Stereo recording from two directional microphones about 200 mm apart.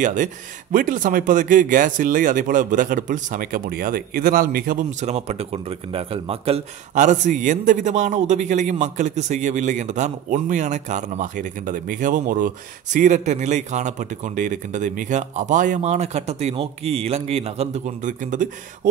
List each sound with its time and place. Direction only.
0.0 s a man's voice: 40° right (ahead or behind)
5.0 s a man's voice: 35° right (ahead or behind)